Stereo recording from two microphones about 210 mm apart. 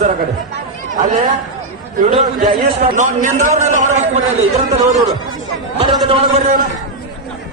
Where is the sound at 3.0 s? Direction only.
35° right (ahead or behind).